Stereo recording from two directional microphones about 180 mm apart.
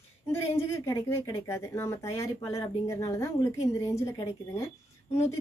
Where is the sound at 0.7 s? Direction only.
15° left (ahead or behind).